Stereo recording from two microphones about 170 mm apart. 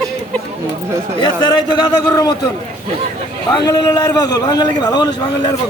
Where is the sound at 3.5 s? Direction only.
25° left (ahead or behind).